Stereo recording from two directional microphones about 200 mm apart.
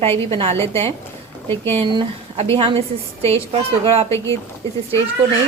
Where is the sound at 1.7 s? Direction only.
25° right (ahead or behind).